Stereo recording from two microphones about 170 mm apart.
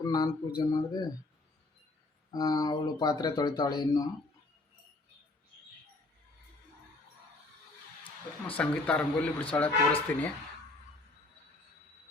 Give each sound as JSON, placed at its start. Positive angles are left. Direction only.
{"t": 0.0, "sound": "speech", "side_deg": 25}
{"t": 2.3, "sound": "speech", "side_deg": 25}
{"t": 8.5, "sound": "a man's voice", "side_deg": 5}